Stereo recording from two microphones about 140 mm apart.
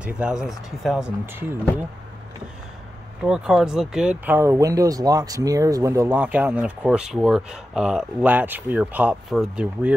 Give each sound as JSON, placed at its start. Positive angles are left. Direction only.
{"t": 0.0, "sound": "speech", "side_deg": -5}
{"t": 1.2, "sound": "speech", "side_deg": -15}
{"t": 3.3, "sound": "speech", "side_deg": -5}